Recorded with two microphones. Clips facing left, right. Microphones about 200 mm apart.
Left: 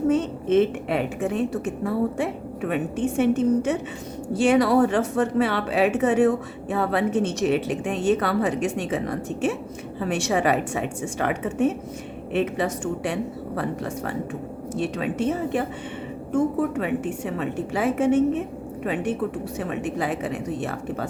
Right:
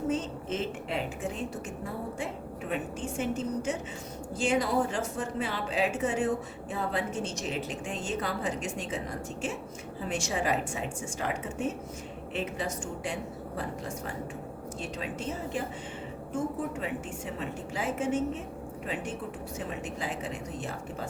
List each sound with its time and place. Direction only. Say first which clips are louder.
0.1 s speech: left 11 dB; 65° left (ahead or behind)
19.5 s speech: left 8 dB; 65° left (ahead or behind)